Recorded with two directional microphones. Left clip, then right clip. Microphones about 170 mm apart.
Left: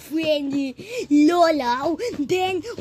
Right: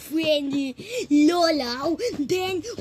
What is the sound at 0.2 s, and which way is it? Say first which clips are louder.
Speech: left 1 dB; 20° left (ahead or behind).